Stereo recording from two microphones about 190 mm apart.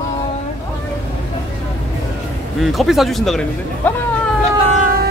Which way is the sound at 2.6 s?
Centre (ahead or behind).